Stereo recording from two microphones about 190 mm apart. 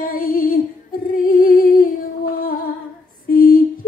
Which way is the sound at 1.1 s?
45° left (ahead or behind).